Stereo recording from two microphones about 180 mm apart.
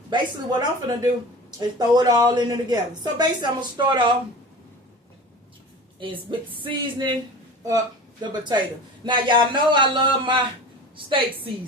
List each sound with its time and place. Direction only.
0.1 s a woman's voice: 25° right (ahead or behind)
6.6 s a woman's voice: 25° right (ahead or behind)
8.2 s a woman's voice: 25° right (ahead or behind)